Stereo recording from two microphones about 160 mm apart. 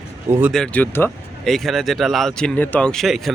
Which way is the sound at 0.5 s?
5° left (ahead or behind).